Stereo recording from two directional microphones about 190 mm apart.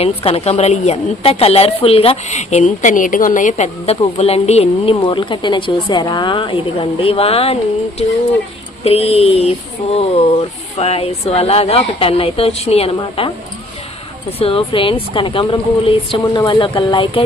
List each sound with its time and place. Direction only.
0.0 s a woman's voice: 30° left (ahead or behind)
8.8 s a woman's voice: 30° left (ahead or behind)
14.4 s speech: 30° left (ahead or behind)